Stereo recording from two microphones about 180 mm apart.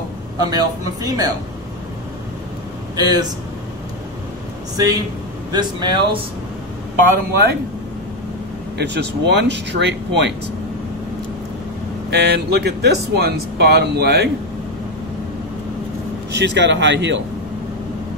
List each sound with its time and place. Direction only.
0.4 s speech: 20° right (ahead or behind)
3.0 s speech: 20° right (ahead or behind)
4.7 s speech: 20° right (ahead or behind)
8.7 s speech: 70° right (ahead or behind)
12.1 s speech: 65° right (ahead or behind)
16.3 s speech: 75° right (ahead or behind)